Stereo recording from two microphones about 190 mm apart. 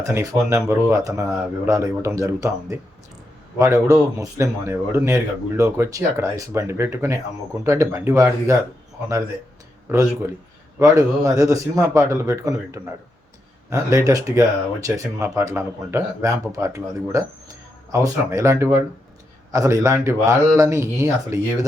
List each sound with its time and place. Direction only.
0.0 s speech: 15° right (ahead or behind)
9.9 s speech: 15° right (ahead or behind)